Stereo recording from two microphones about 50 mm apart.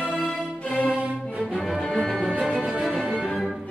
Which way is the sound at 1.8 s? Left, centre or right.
Centre.